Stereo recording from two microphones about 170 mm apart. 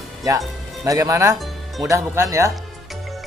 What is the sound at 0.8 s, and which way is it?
Speech, 20° right (ahead or behind).